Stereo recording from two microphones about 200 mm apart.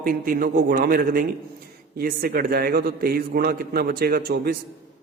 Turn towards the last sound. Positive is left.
turn(degrees=-50)  # may be behind; listen again after turning